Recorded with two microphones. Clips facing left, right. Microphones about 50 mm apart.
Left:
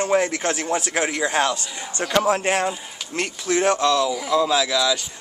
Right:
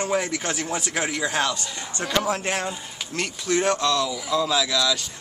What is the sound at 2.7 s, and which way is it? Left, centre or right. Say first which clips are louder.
A man's voice: left 3 dB; centre.